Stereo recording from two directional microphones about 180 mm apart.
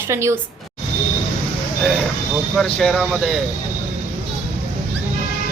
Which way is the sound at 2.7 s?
5° left (ahead or behind).